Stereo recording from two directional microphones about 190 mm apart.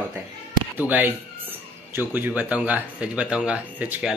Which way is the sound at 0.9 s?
10° right (ahead or behind).